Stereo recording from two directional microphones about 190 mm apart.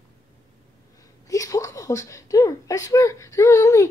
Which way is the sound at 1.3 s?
15° left (ahead or behind).